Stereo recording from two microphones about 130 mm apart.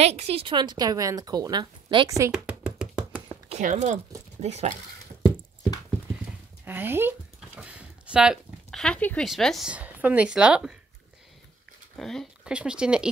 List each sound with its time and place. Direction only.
0.0 s a woman's voice: 55° right (ahead or behind)
0.5 s speech: 35° right (ahead or behind)
2.0 s speech: 25° right (ahead or behind)
2.3 s a sound: 5° right (ahead or behind)
3.6 s speech: 70° right (ahead or behind)
4.4 s a woman's voice: 60° right (ahead or behind)
6.6 s a woman's voice: 15° right (ahead or behind)
7.3 s a sound: 5° right (ahead or behind)
8.6 s speech: 5° left (ahead or behind)
9.7 s a woman's voice: 10° right (ahead or behind)
12.0 s a woman's voice: centre (ahead or behind)